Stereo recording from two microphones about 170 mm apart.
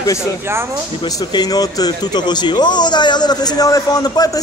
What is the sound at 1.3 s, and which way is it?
A man's voice, 25° left (ahead or behind).